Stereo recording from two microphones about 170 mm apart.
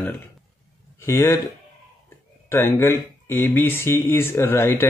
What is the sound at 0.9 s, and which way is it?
Speech, 15° left (ahead or behind).